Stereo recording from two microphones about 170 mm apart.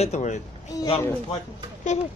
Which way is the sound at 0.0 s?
45° left (ahead or behind).